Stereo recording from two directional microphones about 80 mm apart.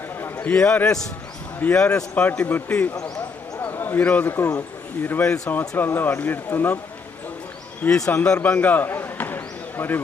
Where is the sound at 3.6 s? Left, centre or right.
Left.